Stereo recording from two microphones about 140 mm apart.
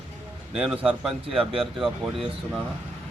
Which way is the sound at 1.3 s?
40° right (ahead or behind).